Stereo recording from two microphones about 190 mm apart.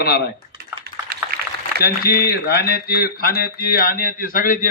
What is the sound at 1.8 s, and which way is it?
Speech, 55° left (ahead or behind).